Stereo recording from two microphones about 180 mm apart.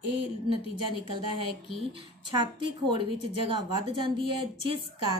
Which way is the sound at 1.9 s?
25° right (ahead or behind).